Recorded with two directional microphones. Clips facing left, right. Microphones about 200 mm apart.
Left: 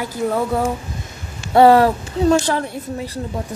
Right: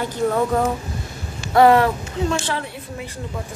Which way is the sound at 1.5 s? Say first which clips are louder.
Left 3 dB; 30° left (ahead or behind).